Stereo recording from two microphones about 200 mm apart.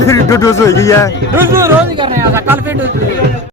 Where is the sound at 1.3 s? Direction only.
15° right (ahead or behind).